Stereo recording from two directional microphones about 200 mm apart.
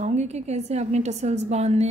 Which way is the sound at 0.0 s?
35° right (ahead or behind).